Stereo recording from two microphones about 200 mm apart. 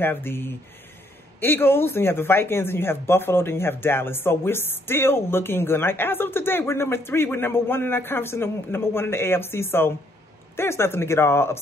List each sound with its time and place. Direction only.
0.0 s speech: 10° left (ahead or behind)